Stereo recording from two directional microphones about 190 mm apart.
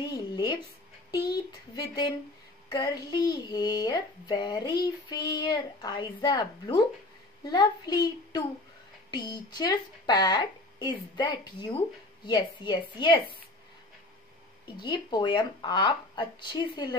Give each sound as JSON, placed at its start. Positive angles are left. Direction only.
{"t": 0.1, "sound": "a sound", "side_deg": 20}
{"t": 1.1, "sound": "a woman's voice", "side_deg": 20}
{"t": 14.8, "sound": "a woman's voice", "side_deg": 20}